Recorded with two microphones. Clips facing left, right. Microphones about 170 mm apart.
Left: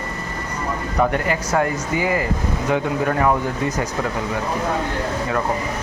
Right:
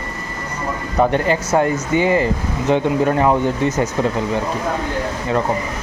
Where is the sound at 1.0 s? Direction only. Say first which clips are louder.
Right 4 dB; 30° right (ahead or behind).